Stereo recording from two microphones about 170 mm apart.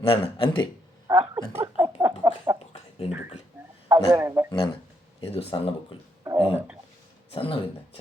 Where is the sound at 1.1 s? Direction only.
10° right (ahead or behind).